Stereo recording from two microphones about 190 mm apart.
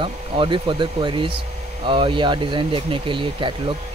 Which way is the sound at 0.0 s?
25° right (ahead or behind).